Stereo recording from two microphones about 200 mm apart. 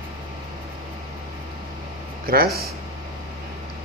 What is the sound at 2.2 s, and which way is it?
Speech, 50° right (ahead or behind).